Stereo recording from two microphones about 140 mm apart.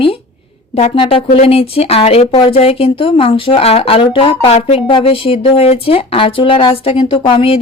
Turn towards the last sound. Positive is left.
turn(degrees=40)  # may be behind; listen again after turning